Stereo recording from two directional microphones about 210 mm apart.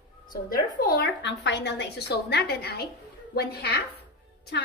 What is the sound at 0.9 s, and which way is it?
A woman's voice, 50° left (ahead or behind).